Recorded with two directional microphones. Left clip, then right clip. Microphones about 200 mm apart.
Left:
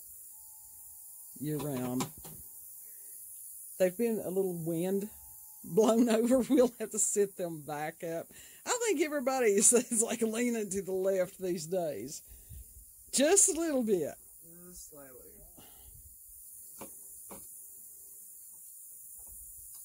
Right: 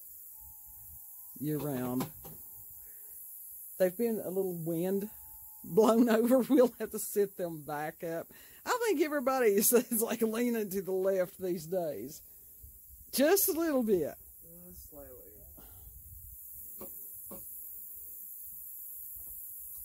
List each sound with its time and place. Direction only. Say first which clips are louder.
1.4 s a man's voice: right 1 dB; centre (ahead or behind)
3.9 s a man's voice: left 1 dB; 15° left (ahead or behind); by 14.2 s 5° right (ahead or behind)